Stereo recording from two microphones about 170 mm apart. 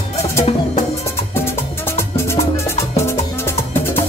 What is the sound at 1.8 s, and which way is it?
Music, 15° left (ahead or behind).